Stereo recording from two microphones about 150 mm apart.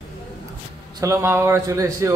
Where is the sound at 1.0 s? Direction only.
15° right (ahead or behind).